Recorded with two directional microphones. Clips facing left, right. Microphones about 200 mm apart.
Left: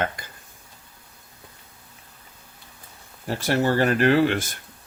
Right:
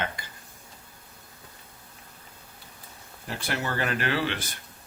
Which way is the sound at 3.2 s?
40° left (ahead or behind).